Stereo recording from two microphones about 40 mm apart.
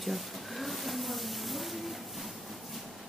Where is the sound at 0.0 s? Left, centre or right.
Centre.